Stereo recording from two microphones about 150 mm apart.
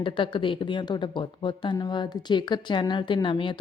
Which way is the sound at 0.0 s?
35° left (ahead or behind).